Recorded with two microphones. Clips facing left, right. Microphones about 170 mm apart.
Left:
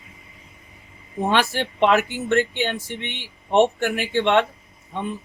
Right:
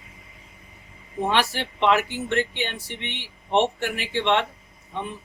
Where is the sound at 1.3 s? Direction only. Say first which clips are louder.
Left 3 dB; 50° left (ahead or behind).